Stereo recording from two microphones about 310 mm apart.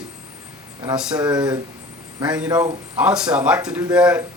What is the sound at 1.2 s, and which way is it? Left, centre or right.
A man's voice, centre.